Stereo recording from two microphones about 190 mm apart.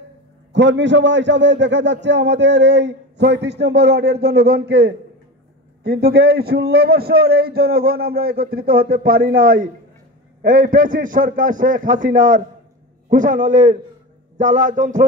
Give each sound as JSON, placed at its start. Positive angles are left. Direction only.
{"t": 0.5, "sound": "a man's voice", "side_deg": -70}